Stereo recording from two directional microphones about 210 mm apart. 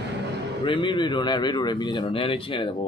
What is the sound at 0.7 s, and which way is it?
Music, 25° left (ahead or behind).